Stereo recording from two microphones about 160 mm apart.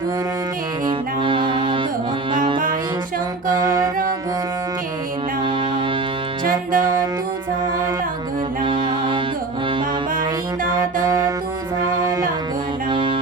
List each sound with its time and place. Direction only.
0.9 s music: 30° right (ahead or behind)
3.5 s music: 25° right (ahead or behind)
6.4 s music: 60° right (ahead or behind)
8.6 s music: 30° right (ahead or behind)
11.0 s music: 20° right (ahead or behind)